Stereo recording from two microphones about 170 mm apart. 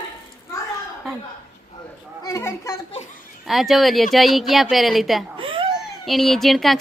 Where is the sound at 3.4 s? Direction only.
Centre (ahead or behind).